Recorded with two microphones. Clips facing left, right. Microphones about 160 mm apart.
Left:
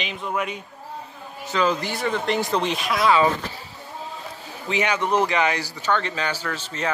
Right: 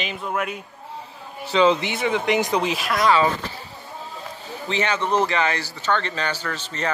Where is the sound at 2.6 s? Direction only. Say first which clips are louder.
Even; centre (ahead or behind).